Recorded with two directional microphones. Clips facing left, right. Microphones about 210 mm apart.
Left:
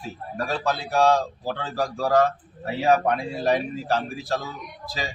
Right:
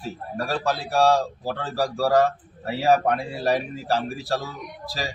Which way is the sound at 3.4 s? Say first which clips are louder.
Left 1 dB; 5° right (ahead or behind).